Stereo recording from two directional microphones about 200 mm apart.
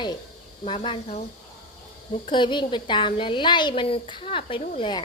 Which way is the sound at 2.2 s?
25° left (ahead or behind).